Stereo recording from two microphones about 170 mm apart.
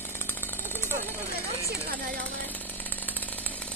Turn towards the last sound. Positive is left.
turn(degrees=10)  # may be behind; listen again after turning